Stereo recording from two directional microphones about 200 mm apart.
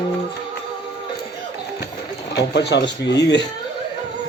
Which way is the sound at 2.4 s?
60° left (ahead or behind).